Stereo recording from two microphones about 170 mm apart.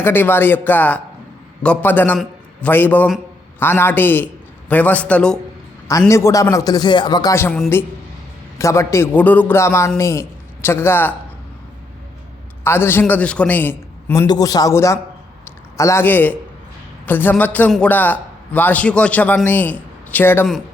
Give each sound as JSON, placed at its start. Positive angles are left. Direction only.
{"t": 0.0, "sound": "a man's voice", "side_deg": 10}
{"t": 5.9, "sound": "a man's voice", "side_deg": 20}
{"t": 12.6, "sound": "a man's voice", "side_deg": 15}